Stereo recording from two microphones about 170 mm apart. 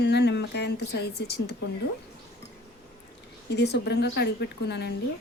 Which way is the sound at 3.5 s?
85° left.